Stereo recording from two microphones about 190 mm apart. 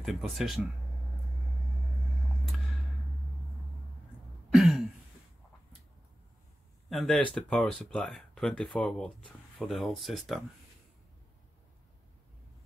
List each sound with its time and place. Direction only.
0.0 s speech: centre (ahead or behind)
4.5 s a sound: centre (ahead or behind)
6.9 s speech: centre (ahead or behind)